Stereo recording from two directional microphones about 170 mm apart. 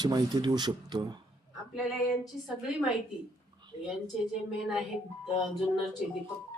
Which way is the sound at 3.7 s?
40° left (ahead or behind).